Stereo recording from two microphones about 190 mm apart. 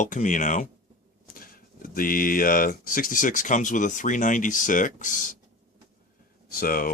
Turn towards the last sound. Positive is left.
turn(degrees=50)  # may be behind; listen again after turning